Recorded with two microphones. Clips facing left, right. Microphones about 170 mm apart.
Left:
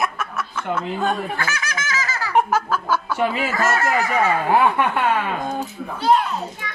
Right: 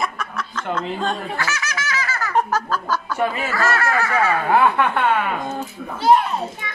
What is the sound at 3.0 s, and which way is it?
Speech, 10° left (ahead or behind).